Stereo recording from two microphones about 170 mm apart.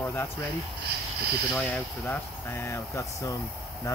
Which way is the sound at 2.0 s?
15° left (ahead or behind).